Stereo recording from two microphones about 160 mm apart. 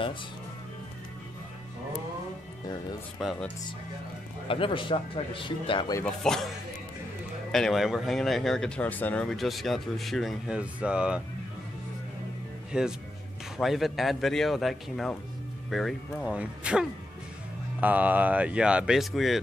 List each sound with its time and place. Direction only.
3.2 s speech: centre (ahead or behind)
4.5 s speech: 35° left (ahead or behind)
6.2 s speech: 5° left (ahead or behind)
7.5 s speech: centre (ahead or behind)
12.7 s speech: 5° right (ahead or behind)